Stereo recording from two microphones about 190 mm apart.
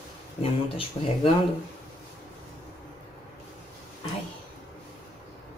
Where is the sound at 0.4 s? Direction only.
30° left (ahead or behind).